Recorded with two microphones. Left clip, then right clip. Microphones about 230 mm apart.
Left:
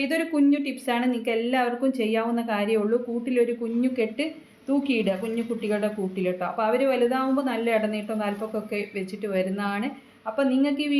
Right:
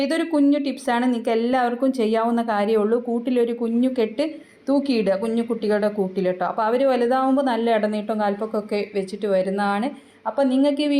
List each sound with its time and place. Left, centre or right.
0.0 s speech: right